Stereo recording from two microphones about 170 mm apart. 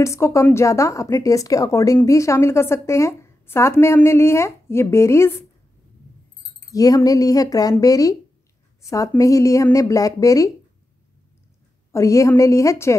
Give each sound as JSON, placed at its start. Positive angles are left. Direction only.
{"t": 0.0, "sound": "a woman's voice", "side_deg": 15}
{"t": 6.6, "sound": "speech", "side_deg": 20}
{"t": 11.9, "sound": "a woman's voice", "side_deg": 20}